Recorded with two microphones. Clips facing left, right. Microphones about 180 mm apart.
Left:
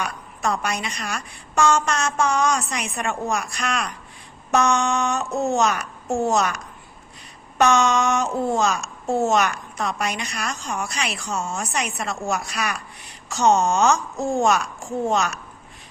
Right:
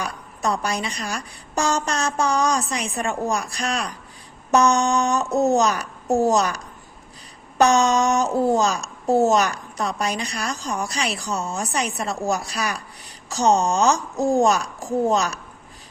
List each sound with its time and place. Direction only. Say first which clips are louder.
0.0 s a child's voice: even; 35° right (ahead or behind)
7.6 s a child's voice: right 1 dB; 35° right (ahead or behind)